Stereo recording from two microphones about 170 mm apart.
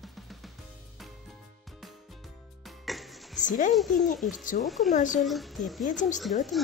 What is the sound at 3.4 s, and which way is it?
Speech, 50° left (ahead or behind).